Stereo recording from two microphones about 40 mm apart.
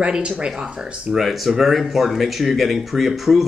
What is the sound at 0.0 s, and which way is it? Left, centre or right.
Speech, right.